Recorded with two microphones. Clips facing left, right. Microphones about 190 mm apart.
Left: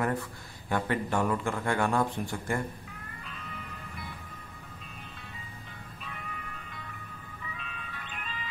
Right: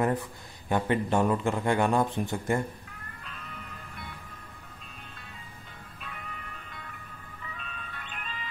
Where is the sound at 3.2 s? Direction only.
Centre (ahead or behind).